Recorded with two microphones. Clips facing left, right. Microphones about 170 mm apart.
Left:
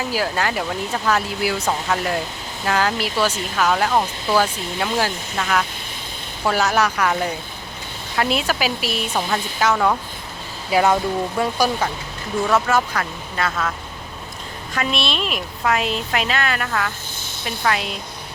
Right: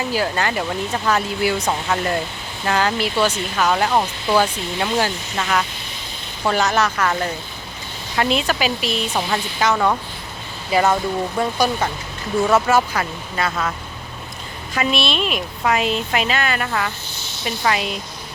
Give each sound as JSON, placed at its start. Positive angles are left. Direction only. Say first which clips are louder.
{"t": 0.0, "sound": "a woman's voice", "louder": "right 1 dB", "side_deg": 5}
{"t": 12.5, "sound": "speech", "louder": "right 2 dB", "side_deg": -5}
{"t": 14.8, "sound": "speech", "louder": "right 3 dB", "side_deg": 0}
{"t": 17.2, "sound": "sizzle", "louder": "even", "side_deg": 55}
{"t": 17.6, "sound": "speech", "louder": "right 1 dB", "side_deg": -5}